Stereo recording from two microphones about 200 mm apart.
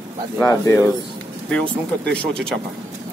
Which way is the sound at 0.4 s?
15° left (ahead or behind).